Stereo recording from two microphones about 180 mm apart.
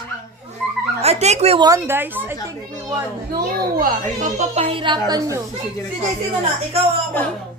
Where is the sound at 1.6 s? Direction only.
15° right (ahead or behind).